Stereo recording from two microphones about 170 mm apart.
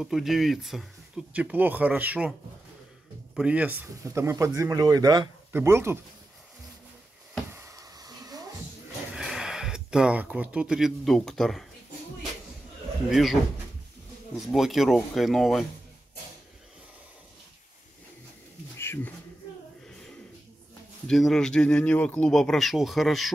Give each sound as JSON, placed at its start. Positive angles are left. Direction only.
{"t": 0.0, "sound": "speech", "side_deg": 0}
{"t": 3.3, "sound": "speech", "side_deg": -10}
{"t": 7.5, "sound": "a sound", "side_deg": -15}
{"t": 9.1, "sound": "speech", "side_deg": -5}
{"t": 13.1, "sound": "speech", "side_deg": 0}
{"t": 14.4, "sound": "speech", "side_deg": 0}
{"t": 18.8, "sound": "a sound", "side_deg": 15}
{"t": 21.1, "sound": "speech", "side_deg": 0}